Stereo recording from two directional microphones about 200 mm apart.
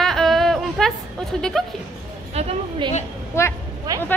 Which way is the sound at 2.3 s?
30° right (ahead or behind).